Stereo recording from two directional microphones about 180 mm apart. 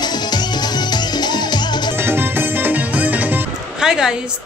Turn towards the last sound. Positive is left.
turn(degrees=-5)  # may be behind; listen again after turning